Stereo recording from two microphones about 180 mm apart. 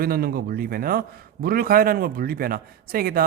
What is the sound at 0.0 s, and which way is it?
A man's voice, 55° right (ahead or behind).